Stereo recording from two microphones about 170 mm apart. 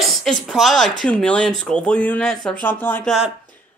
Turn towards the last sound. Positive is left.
turn(degrees=10)  # may be behind; listen again after turning